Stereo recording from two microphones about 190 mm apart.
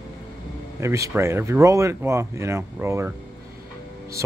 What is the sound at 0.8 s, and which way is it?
Speech, 15° right (ahead or behind).